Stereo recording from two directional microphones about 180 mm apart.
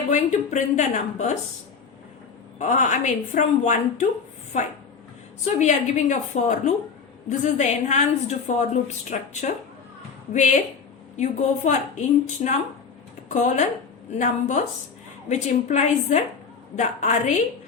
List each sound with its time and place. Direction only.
0.1 s a woman's voice: 40° left (ahead or behind)
2.6 s a woman's voice: 45° left (ahead or behind)